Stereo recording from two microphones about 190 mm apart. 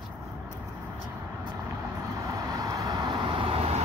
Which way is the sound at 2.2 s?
20° right (ahead or behind).